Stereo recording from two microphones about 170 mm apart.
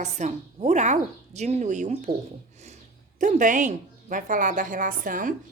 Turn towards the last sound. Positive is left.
turn(degrees=-50)  # may be behind; listen again after turning